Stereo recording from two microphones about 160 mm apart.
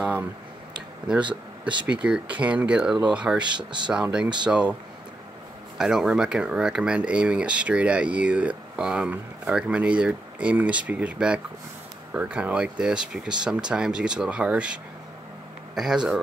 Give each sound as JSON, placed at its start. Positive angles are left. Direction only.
{"t": 0.0, "sound": "a sound", "side_deg": -10}
{"t": 2.0, "sound": "speech", "side_deg": -5}
{"t": 3.4, "sound": "speech", "side_deg": -30}
{"t": 3.9, "sound": "speech", "side_deg": -5}
{"t": 5.8, "sound": "speech", "side_deg": -5}